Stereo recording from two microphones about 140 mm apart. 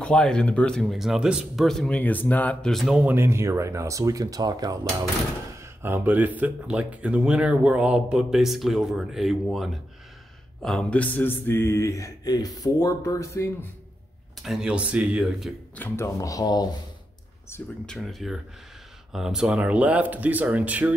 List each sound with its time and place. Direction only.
0.0 s speech: 5° left (ahead or behind); by 4.7 s 30° right (ahead or behind)
5.6 s speech: 15° right (ahead or behind); by 13.7 s 20° left (ahead or behind)
14.4 s speech: 5° right (ahead or behind)
15.7 s speech: 15° left (ahead or behind)
16.2 s speech: 25° left (ahead or behind)
17.8 s speech: centre (ahead or behind)